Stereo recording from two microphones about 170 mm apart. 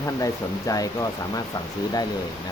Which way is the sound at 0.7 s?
20° left (ahead or behind).